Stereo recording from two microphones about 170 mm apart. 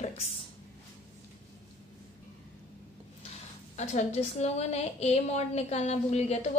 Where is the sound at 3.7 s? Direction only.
45° left (ahead or behind).